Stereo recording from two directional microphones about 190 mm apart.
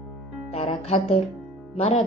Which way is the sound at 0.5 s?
35° left (ahead or behind).